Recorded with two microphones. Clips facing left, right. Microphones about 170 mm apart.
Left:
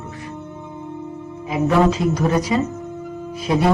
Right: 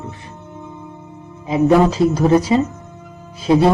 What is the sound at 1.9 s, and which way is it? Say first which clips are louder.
Speech: right 4 dB; 35° right (ahead or behind).